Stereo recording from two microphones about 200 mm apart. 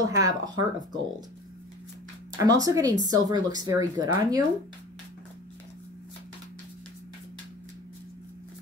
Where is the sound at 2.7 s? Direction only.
15° right (ahead or behind).